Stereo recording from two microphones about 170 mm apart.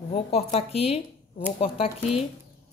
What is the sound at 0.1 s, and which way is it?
Speech, 35° left (ahead or behind).